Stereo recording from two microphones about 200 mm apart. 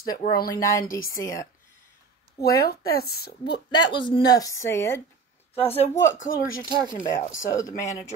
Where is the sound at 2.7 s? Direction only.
50° left (ahead or behind).